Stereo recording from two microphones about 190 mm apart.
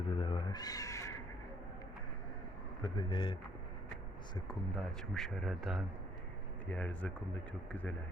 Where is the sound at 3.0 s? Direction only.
25° left (ahead or behind).